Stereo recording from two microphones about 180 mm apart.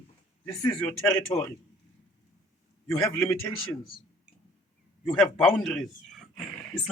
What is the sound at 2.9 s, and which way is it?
Speech, 15° left (ahead or behind).